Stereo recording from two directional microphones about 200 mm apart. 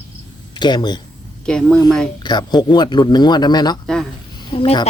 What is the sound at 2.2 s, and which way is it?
A man's voice, 20° left (ahead or behind).